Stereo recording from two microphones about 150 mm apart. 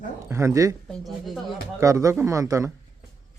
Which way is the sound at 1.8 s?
20° right (ahead or behind).